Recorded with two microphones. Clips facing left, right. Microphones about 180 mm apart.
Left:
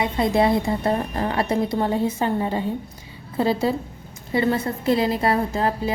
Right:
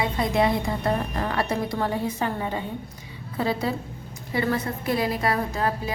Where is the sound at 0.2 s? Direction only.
30° left (ahead or behind).